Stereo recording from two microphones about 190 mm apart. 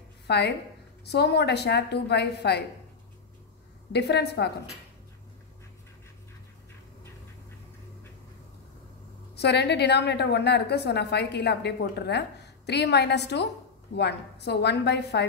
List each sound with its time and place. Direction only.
0.3 s a woman's voice: 60° left (ahead or behind)
3.9 s a woman's voice: 60° left (ahead or behind)
9.3 s a woman's voice: 60° left (ahead or behind)